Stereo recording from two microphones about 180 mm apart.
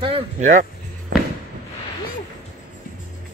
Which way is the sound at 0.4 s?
45° right (ahead or behind).